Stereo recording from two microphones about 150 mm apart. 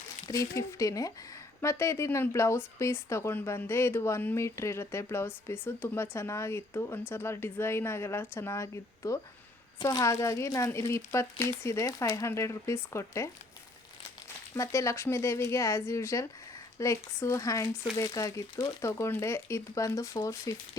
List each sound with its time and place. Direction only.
0.3 s speech: 20° left (ahead or behind)
14.5 s speech: 20° left (ahead or behind)